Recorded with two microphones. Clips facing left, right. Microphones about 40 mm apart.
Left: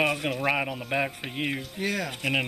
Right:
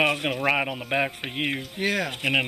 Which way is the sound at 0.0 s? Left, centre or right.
Right.